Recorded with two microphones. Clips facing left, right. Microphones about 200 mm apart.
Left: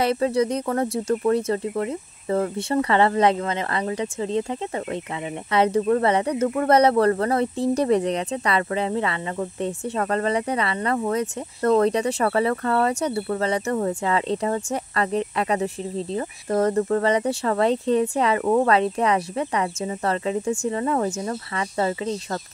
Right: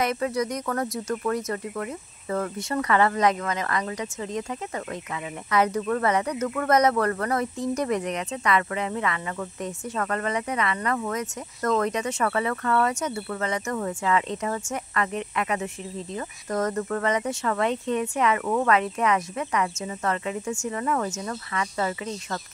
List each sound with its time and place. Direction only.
0.0 s speech: 30° left (ahead or behind)